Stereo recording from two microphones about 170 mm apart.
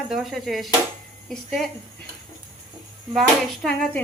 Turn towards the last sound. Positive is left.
turn(degrees=5)  # may be behind; listen again after turning